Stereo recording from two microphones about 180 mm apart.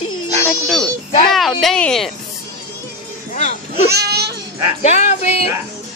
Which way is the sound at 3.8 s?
65° right (ahead or behind).